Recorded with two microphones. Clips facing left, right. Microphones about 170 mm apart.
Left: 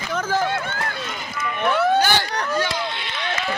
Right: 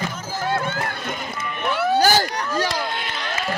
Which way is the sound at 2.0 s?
40° right (ahead or behind).